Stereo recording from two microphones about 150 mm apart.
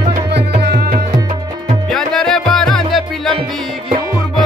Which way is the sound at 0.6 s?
90° right.